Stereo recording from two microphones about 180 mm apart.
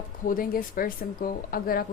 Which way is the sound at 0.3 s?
50° left (ahead or behind).